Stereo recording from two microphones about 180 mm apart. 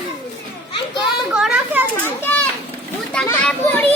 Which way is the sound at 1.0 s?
5° right (ahead or behind).